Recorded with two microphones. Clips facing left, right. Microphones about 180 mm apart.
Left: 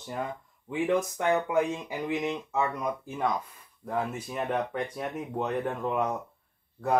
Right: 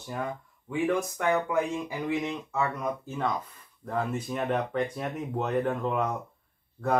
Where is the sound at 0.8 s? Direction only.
20° left (ahead or behind).